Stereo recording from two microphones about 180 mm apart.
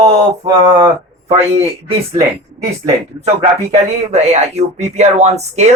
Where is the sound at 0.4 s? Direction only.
20° right (ahead or behind).